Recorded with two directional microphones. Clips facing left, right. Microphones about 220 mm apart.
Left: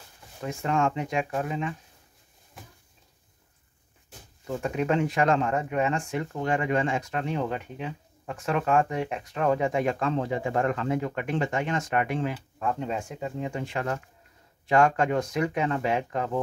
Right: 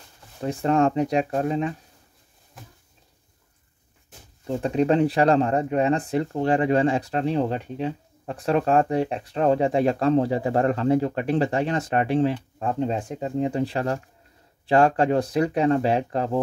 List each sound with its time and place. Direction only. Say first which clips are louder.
0.4 s speech: right 6 dB; 35° right (ahead or behind)
4.5 s speech: right 6 dB; 30° right (ahead or behind)